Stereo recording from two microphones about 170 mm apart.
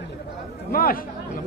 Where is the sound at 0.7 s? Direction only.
60° left (ahead or behind).